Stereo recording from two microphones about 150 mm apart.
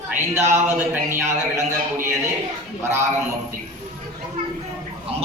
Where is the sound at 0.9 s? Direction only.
15° right (ahead or behind).